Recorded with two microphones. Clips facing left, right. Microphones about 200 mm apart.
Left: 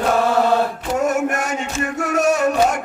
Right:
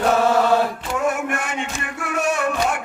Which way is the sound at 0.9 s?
40° left (ahead or behind).